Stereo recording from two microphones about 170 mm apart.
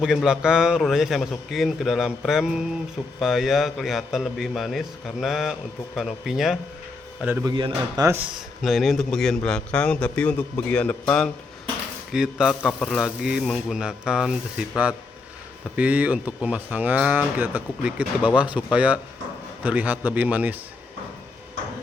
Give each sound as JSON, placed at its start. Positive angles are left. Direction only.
{"t": 0.0, "sound": "a man's voice", "side_deg": -5}
{"t": 7.4, "sound": "speech", "side_deg": -25}
{"t": 8.0, "sound": "speech", "side_deg": -15}
{"t": 8.6, "sound": "a man's voice", "side_deg": 0}
{"t": 12.1, "sound": "a man's voice", "side_deg": -5}
{"t": 15.7, "sound": "speech", "side_deg": -10}